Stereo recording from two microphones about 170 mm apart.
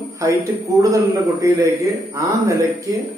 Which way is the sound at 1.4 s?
20° right (ahead or behind).